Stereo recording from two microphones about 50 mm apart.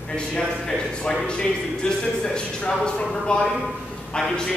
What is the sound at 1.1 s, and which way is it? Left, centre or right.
A man's voice, centre.